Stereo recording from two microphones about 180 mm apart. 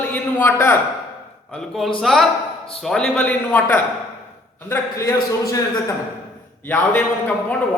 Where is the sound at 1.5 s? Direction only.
Centre (ahead or behind); by 5.2 s 15° left (ahead or behind).